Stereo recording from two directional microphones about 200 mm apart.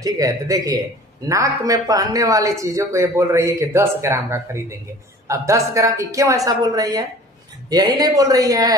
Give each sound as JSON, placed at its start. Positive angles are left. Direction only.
{"t": 0.0, "sound": "speech", "side_deg": -15}